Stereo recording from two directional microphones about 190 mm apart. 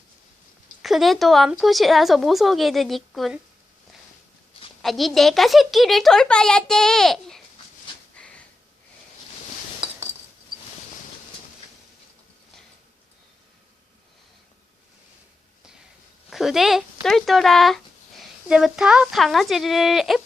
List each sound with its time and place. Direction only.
0.8 s a woman's voice: centre (ahead or behind)
4.8 s a woman's voice: centre (ahead or behind)
8.1 s a sound: 5° left (ahead or behind)
9.8 s chink: 25° right (ahead or behind)
16.3 s speech: centre (ahead or behind)